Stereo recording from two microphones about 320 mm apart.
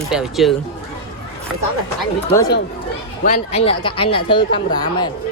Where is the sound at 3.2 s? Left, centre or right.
Centre.